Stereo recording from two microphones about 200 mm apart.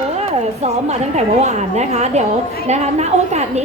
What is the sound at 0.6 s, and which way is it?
A woman's voice, 35° right (ahead or behind).